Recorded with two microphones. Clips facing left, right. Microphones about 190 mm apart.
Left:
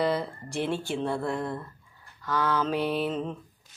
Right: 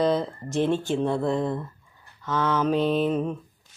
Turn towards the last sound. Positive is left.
turn(degrees=-10)  # may be behind; listen again after turning